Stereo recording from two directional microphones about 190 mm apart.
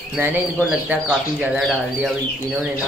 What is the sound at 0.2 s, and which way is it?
Speech, 10° right (ahead or behind).